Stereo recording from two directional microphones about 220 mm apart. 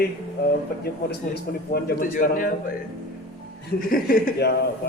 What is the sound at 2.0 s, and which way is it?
Speech, 40° left (ahead or behind).